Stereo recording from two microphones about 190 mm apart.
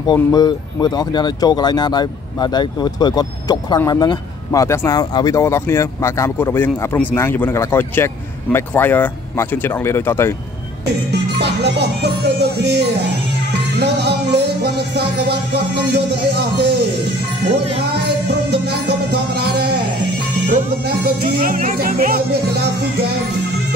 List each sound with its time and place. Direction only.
0.0 s speech: 20° left (ahead or behind)
11.3 s speech: 60° right (ahead or behind)
13.5 s music: 60° right (ahead or behind)
17.5 s speech: 30° right (ahead or behind)
18.0 s music: 60° right (ahead or behind)
20.8 s music: 55° right (ahead or behind)